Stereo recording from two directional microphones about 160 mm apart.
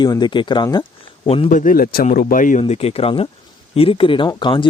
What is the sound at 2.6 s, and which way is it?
Speech, 40° left (ahead or behind).